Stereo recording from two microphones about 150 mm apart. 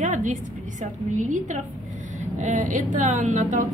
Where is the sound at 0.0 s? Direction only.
55° right (ahead or behind).